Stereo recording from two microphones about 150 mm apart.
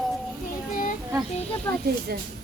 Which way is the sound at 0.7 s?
60° left (ahead or behind).